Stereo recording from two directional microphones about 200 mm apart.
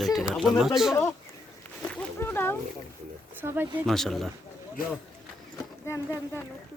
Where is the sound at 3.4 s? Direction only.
10° right (ahead or behind).